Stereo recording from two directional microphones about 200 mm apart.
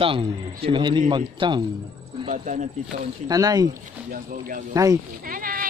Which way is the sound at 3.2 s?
15° right (ahead or behind).